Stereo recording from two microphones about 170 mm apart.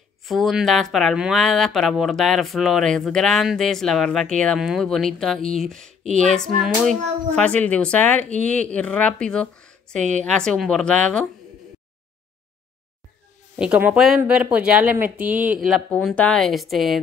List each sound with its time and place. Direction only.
0.2 s speech: centre (ahead or behind)
6.0 s female singing: 45° right (ahead or behind)
6.3 s speech: 5° left (ahead or behind)
13.6 s speech: 10° right (ahead or behind)